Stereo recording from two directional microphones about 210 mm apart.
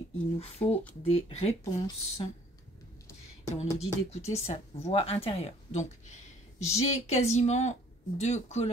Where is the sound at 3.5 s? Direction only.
30° left (ahead or behind).